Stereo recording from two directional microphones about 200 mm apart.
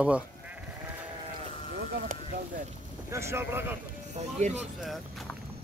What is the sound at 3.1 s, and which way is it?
Speech, 15° right (ahead or behind).